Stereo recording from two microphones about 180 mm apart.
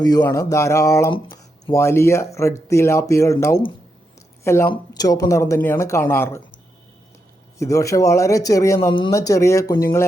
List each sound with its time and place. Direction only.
0.0 s speech: 20° left (ahead or behind)
1.1 s a sound: 30° left (ahead or behind)
1.7 s speech: 15° left (ahead or behind)
7.6 s speech: 15° left (ahead or behind)